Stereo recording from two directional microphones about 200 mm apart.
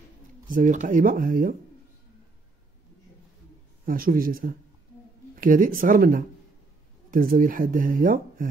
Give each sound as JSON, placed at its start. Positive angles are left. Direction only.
{"t": 0.5, "sound": "speech", "side_deg": -40}
{"t": 3.8, "sound": "speech", "side_deg": -45}